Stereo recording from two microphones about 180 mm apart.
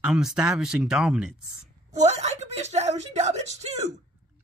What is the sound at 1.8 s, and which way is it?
Speech, 40° right (ahead or behind).